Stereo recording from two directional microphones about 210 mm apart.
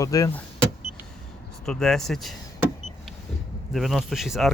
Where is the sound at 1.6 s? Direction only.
5° left (ahead or behind).